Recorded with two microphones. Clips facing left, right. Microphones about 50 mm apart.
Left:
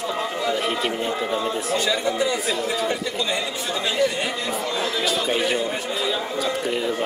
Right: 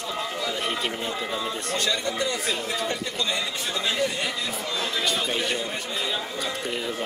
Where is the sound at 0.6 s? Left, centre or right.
Centre.